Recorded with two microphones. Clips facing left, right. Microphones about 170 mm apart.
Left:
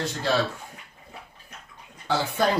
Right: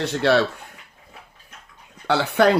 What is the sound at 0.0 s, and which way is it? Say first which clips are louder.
Speech: right 6 dB; 70° right (ahead or behind).